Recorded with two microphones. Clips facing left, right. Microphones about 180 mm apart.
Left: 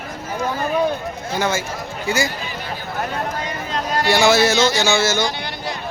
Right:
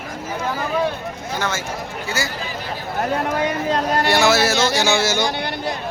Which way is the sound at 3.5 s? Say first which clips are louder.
Right 5 dB; 55° right (ahead or behind).